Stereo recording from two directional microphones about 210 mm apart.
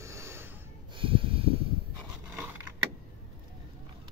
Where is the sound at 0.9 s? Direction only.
25° right (ahead or behind).